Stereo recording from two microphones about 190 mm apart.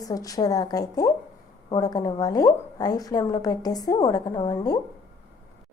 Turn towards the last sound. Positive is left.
turn(degrees=20)  # may be behind; listen again after turning